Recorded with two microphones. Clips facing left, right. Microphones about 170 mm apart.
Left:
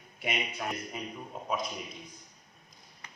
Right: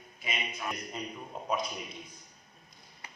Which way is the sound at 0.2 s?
65° left (ahead or behind).